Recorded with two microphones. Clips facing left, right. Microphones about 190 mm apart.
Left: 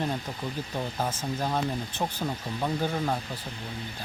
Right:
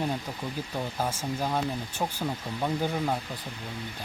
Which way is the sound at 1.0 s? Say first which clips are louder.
Right 1 dB; 10° right (ahead or behind).